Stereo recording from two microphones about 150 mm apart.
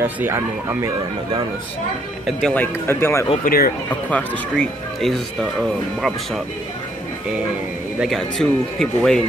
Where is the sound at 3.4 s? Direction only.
75° left (ahead or behind).